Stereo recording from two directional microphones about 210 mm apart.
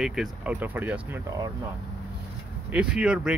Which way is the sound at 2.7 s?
5° right (ahead or behind).